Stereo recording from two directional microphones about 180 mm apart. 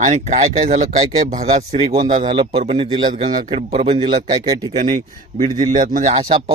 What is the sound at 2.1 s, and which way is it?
Speech, 25° right (ahead or behind).